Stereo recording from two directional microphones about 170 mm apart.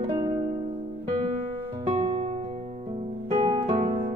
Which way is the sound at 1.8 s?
30° right (ahead or behind).